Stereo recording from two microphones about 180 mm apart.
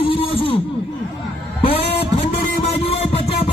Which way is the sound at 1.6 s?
30° left (ahead or behind).